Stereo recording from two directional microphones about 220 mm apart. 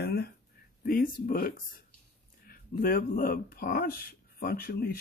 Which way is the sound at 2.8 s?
40° left (ahead or behind).